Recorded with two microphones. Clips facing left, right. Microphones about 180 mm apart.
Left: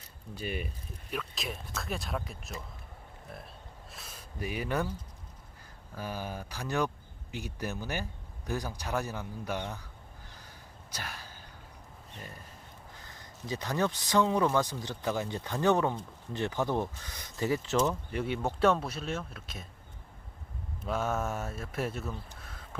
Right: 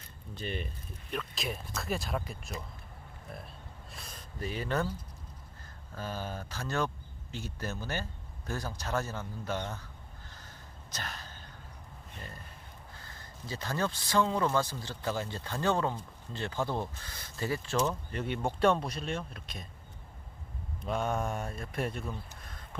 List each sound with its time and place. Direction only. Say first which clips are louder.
0.3 s speech: left 1 dB; 10° left (ahead or behind)
3.9 s speech: left 1 dB; 5° left (ahead or behind)
10.9 s a sound: even; 10° left (ahead or behind)
12.9 s speech: even; 15° left (ahead or behind)
20.8 s speech: even; 5° left (ahead or behind)
22.4 s a sound: left 1 dB; 5° left (ahead or behind)